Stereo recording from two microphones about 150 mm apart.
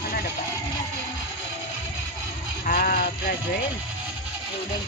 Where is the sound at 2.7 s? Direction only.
65° left (ahead or behind); by 3.6 s 85° left.